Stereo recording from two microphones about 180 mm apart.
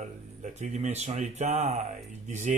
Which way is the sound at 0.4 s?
40° right (ahead or behind).